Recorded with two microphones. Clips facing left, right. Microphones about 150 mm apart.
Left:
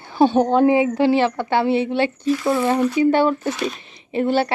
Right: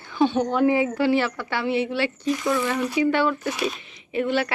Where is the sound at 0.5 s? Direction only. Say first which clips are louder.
Left 5 dB; 25° left (ahead or behind).